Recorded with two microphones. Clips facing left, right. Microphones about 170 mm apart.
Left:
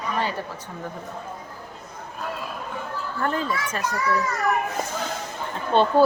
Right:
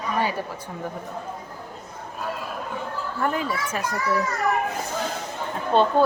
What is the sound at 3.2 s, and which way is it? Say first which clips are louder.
Speech: even; 10° right (ahead or behind).